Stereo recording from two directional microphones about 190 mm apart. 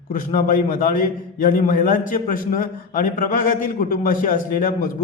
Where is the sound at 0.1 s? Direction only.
45° left (ahead or behind).